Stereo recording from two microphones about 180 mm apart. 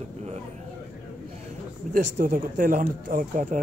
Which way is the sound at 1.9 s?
45° right (ahead or behind).